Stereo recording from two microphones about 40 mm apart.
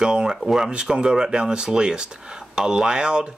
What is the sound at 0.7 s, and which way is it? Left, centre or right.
Speech, right.